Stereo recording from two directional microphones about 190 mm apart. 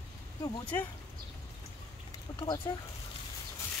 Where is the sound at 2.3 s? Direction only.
20° left (ahead or behind).